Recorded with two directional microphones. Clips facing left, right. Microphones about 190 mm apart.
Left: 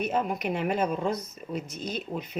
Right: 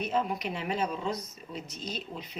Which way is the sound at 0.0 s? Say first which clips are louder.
Left 2 dB; 55° left (ahead or behind).